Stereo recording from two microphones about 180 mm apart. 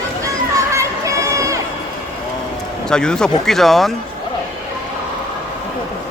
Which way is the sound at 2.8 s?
5° left (ahead or behind).